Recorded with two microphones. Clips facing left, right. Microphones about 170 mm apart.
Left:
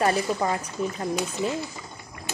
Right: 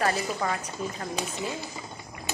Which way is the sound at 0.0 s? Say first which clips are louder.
Left 4 dB; 25° left (ahead or behind).